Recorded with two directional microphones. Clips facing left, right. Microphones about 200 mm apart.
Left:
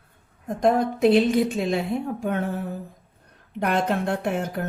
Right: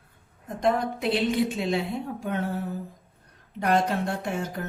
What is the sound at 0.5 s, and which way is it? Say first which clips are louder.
A woman's voice: left 4 dB; 45° left (ahead or behind).